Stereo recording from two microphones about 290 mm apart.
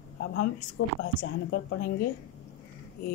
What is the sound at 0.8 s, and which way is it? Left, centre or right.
Speech, left.